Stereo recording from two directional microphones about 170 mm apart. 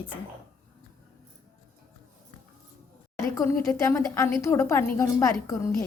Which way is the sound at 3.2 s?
15° left (ahead or behind).